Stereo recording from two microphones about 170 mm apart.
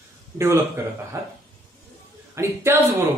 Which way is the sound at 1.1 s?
20° right (ahead or behind).